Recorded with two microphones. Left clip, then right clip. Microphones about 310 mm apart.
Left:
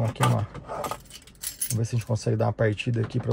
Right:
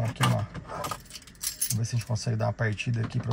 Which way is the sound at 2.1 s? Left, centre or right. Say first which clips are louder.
Left 5 dB; left.